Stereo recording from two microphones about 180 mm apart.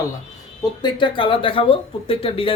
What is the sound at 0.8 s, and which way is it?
Speech, 25° left (ahead or behind).